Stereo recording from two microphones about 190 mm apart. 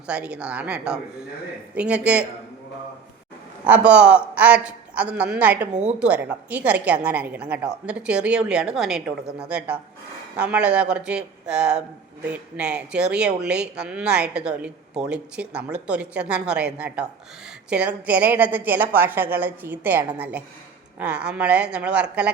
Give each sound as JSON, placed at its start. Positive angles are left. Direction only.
{"t": 0.1, "sound": "a man's voice", "side_deg": -5}
{"t": 3.7, "sound": "a man's voice", "side_deg": -5}
{"t": 5.7, "sound": "a woman's voice", "side_deg": -40}
{"t": 6.0, "sound": "a man's voice", "side_deg": -10}